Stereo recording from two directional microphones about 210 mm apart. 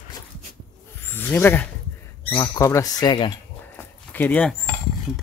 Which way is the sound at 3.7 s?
10° left (ahead or behind).